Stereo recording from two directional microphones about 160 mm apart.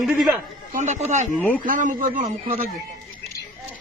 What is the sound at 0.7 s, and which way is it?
Speech, 50° right (ahead or behind).